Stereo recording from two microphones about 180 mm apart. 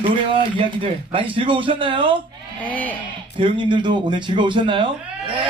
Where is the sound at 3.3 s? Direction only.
25° right (ahead or behind).